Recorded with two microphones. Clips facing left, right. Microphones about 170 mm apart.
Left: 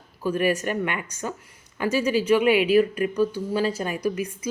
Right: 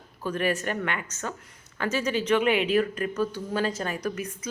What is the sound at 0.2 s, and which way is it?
Speech, 10° left (ahead or behind).